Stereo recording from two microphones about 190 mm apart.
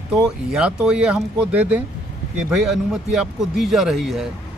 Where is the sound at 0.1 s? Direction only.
5° right (ahead or behind).